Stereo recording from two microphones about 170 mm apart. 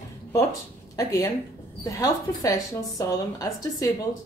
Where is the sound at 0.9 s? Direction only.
20° left (ahead or behind).